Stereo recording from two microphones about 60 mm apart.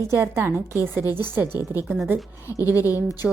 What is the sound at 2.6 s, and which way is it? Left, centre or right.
Speech, left.